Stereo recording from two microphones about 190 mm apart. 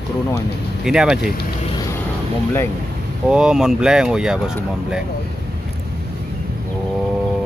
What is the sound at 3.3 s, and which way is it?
Speech, 5° right (ahead or behind).